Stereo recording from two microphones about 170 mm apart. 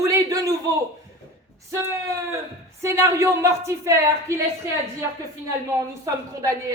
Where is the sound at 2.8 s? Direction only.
15° right (ahead or behind).